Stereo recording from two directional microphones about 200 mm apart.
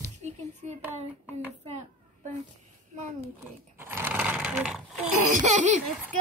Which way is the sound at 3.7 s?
10° right (ahead or behind).